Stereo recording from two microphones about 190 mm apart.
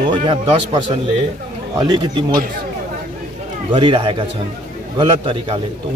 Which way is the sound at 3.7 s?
25° right (ahead or behind).